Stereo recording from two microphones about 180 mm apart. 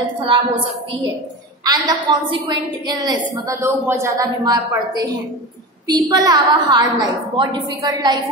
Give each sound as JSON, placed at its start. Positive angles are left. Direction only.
{"t": 0.2, "sound": "a woman's voice", "side_deg": -30}
{"t": 1.6, "sound": "a woman's voice", "side_deg": -20}